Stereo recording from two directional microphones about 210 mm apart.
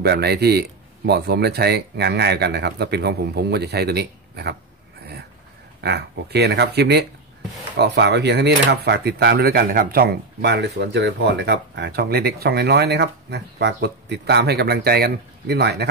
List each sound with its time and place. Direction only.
0.0 s speech: 50° right (ahead or behind)
5.8 s speech: 50° right (ahead or behind)